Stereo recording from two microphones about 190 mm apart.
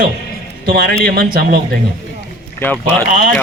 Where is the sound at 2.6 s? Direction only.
10° left (ahead or behind).